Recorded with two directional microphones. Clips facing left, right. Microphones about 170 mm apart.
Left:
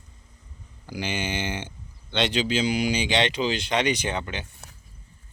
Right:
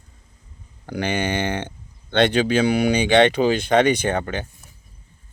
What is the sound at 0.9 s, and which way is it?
Speech, 60° right (ahead or behind).